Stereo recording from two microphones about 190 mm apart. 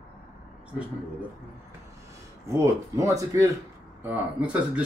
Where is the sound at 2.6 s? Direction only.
15° right (ahead or behind).